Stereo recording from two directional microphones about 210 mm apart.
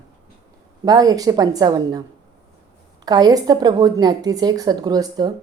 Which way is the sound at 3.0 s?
20° right (ahead or behind).